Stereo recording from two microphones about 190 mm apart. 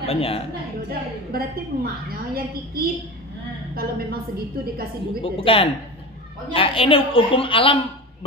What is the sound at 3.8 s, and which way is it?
Speech, 50° right (ahead or behind).